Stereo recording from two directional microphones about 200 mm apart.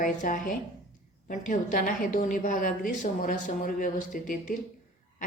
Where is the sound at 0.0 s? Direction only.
40° left (ahead or behind).